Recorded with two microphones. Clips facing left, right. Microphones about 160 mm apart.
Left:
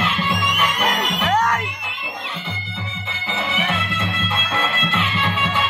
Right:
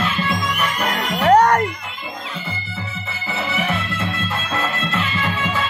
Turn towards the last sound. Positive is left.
turn(degrees=-5)  # may be behind; listen again after turning